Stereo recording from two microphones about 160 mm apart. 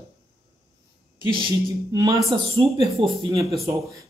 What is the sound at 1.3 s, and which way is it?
Speech, 25° right (ahead or behind).